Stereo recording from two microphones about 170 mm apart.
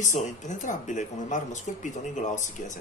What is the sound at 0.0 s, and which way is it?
Speech, 45° left (ahead or behind).